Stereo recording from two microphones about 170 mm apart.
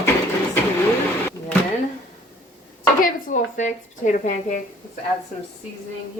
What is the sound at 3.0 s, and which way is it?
Speech, 45° left (ahead or behind).